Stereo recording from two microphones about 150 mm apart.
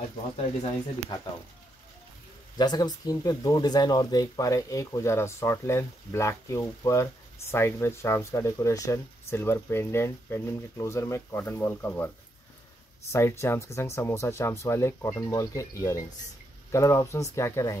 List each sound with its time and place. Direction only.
1.1 s speech: 30° left (ahead or behind)
2.5 s speech: 25° left (ahead or behind)
13.1 s speech: 20° left (ahead or behind)